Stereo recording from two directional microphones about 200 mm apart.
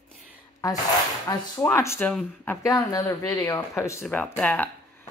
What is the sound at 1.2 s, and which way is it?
Speech, 15° left (ahead or behind).